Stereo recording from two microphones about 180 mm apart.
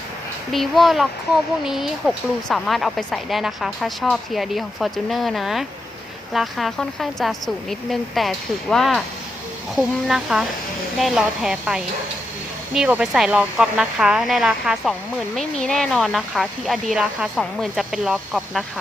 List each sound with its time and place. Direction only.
0.5 s speech: centre (ahead or behind)